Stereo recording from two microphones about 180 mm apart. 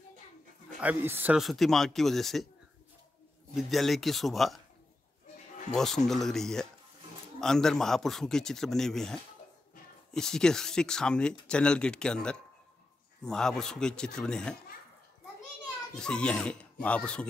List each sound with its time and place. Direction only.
0.7 s speech: 10° right (ahead or behind)
3.5 s speech: centre (ahead or behind)
5.7 s speech: 5° left (ahead or behind)
15.9 s speech: 5° left (ahead or behind)